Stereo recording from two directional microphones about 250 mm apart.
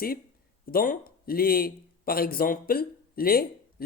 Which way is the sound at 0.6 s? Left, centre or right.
Left.